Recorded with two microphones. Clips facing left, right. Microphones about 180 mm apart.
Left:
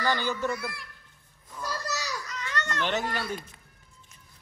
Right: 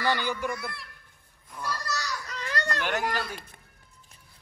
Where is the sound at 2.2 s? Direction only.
35° right (ahead or behind).